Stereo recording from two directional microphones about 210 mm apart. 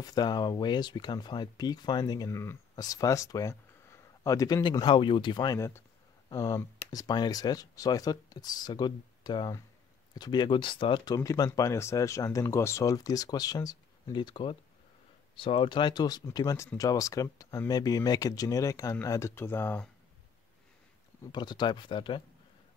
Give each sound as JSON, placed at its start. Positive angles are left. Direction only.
{"t": 0.0, "sound": "speech", "side_deg": 20}
{"t": 21.2, "sound": "speech", "side_deg": 20}